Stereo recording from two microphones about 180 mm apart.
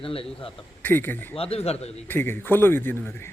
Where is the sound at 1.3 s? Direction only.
35° left (ahead or behind).